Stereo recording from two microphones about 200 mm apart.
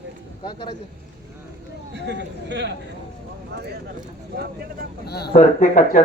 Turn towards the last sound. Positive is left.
turn(degrees=40)  # may be behind; listen again after turning